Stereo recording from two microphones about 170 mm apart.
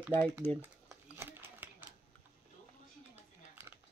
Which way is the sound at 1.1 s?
15° right (ahead or behind).